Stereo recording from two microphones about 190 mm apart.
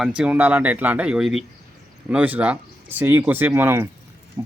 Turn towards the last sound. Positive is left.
turn(degrees=-10)  # may be behind; listen again after turning